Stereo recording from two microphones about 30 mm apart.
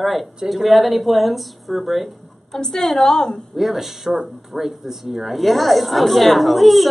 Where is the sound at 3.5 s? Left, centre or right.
Centre.